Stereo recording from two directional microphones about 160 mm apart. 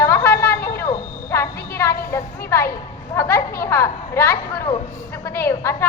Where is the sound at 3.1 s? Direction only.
15° left (ahead or behind).